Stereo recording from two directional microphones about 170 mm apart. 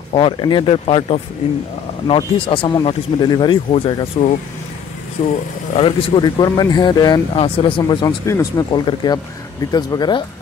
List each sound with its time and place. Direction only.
0.1 s speech: 30° left (ahead or behind)
5.2 s speech: 45° left (ahead or behind)
5.8 s speech: 30° left (ahead or behind)